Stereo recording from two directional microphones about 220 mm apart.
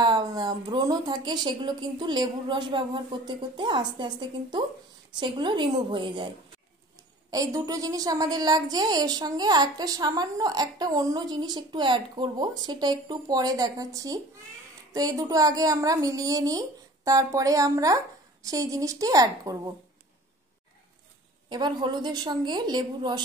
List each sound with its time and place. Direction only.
0.0 s a woman's voice: 20° right (ahead or behind)
21.5 s a woman's voice: 20° right (ahead or behind)